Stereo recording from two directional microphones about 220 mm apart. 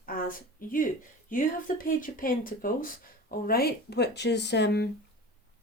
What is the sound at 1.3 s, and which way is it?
Speech, 40° left (ahead or behind).